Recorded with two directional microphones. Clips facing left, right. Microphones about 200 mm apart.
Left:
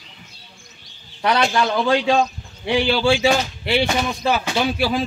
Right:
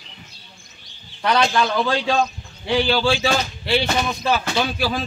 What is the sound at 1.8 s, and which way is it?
Speech, 15° left (ahead or behind).